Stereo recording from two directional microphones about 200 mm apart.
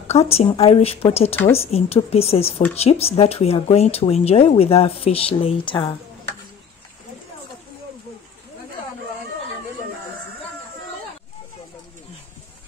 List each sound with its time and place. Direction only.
0.1 s speech: 30° left (ahead or behind)